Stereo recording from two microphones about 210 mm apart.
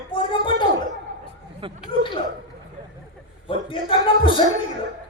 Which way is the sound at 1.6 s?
25° right (ahead or behind).